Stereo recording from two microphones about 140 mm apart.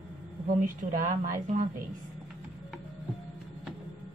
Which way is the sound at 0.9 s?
75° right (ahead or behind).